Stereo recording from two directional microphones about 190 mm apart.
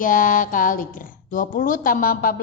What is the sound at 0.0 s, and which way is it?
Speech, 45° left (ahead or behind).